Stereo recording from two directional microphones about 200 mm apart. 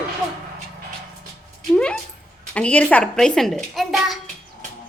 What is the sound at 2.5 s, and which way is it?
A child's voice, 5° left (ahead or behind).